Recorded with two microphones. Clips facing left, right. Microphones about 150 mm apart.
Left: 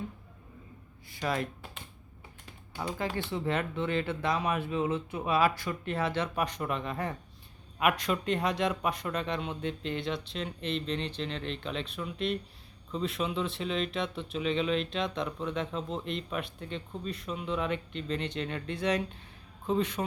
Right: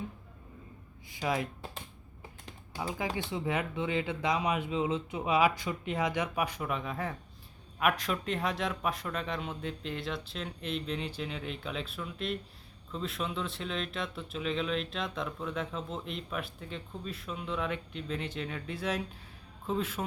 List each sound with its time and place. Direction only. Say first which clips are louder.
1.2 s speech: even; 10° right (ahead or behind)
2.7 s speech: left 1 dB; 10° right (ahead or behind)